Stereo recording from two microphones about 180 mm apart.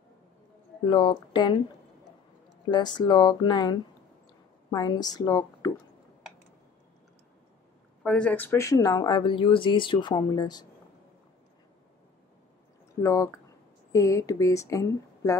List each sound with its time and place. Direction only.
0.8 s speech: 25° left (ahead or behind)
2.7 s a woman's voice: 25° left (ahead or behind)
8.0 s speech: 5° left (ahead or behind); by 10.7 s 20° left (ahead or behind)
13.0 s speech: 15° left (ahead or behind)